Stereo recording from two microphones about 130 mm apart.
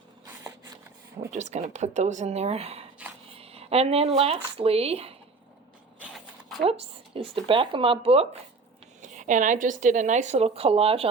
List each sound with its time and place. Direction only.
1.3 s speech: 65° right (ahead or behind)
6.7 s speech: 45° right (ahead or behind)
9.0 s a woman's voice: 75° right (ahead or behind); by 11.1 s 45° right (ahead or behind)